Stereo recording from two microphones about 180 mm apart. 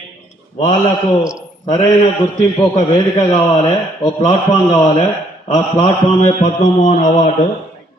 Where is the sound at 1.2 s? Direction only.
5° right (ahead or behind).